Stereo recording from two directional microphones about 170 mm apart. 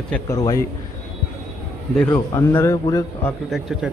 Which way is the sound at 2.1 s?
20° left (ahead or behind).